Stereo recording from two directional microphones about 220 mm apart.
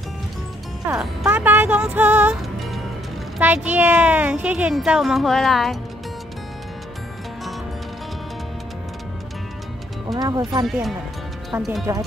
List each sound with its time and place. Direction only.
0.8 s speech: 10° right (ahead or behind)
10.1 s speech: 15° right (ahead or behind)
10.6 s speech: centre (ahead or behind)